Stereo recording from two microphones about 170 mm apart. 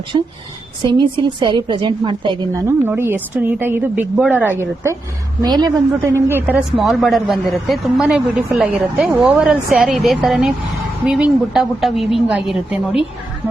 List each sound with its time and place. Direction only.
0.1 s a woman's voice: 25° right (ahead or behind)
2.6 s a woman's voice: 15° right (ahead or behind)
5.4 s a woman's voice: 25° right (ahead or behind); by 13.0 s 5° right (ahead or behind)